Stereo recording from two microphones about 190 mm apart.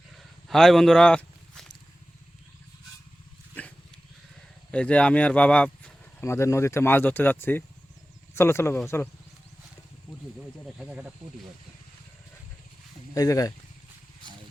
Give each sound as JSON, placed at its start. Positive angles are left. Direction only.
{"t": 0.4, "sound": "a sound", "side_deg": 0}
{"t": 4.7, "sound": "speech", "side_deg": 5}
{"t": 10.8, "sound": "speech", "side_deg": -5}
{"t": 13.1, "sound": "speech", "side_deg": 20}